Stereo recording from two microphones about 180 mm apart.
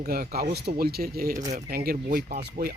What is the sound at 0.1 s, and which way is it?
Speech, 55° right (ahead or behind).